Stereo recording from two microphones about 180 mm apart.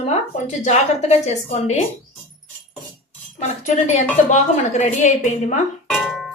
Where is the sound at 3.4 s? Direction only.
40° left (ahead or behind).